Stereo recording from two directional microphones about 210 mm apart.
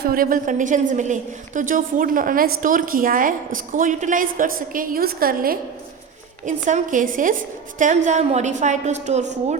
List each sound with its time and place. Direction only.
0.0 s a woman's voice: 45° right (ahead or behind)